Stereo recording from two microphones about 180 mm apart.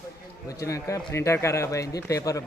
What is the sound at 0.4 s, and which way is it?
Speech, 15° left (ahead or behind).